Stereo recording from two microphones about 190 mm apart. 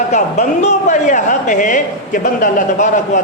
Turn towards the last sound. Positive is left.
turn(degrees=45)  # may be behind; listen again after turning